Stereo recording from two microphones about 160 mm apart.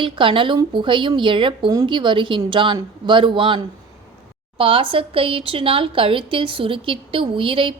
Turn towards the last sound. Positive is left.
turn(degrees=-35)  # may be behind; listen again after turning